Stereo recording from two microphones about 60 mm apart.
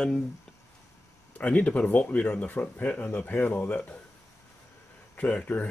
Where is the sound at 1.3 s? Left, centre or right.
Left.